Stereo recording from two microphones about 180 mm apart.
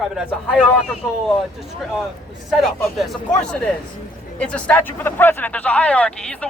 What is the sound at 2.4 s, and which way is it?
Speech, centre (ahead or behind).